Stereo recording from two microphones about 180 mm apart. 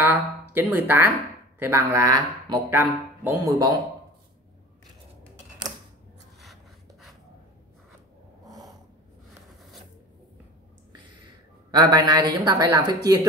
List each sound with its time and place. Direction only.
0.0 s speech: 10° right (ahead or behind)
6.4 s a sound: centre (ahead or behind)
11.7 s speech: 20° right (ahead or behind)